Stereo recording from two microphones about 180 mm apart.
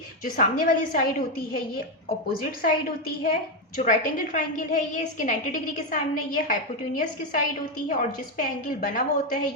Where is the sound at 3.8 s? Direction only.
45° left (ahead or behind).